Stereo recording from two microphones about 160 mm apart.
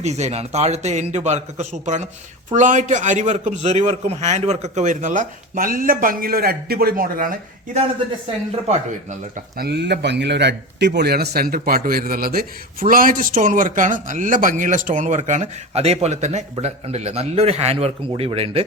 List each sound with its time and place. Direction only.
0.0 s speech: 45° right (ahead or behind); by 7.3 s 60° right (ahead or behind)
8.6 s speech: 40° right (ahead or behind)
9.6 s speech: 90° right; by 18.6 s 35° right (ahead or behind)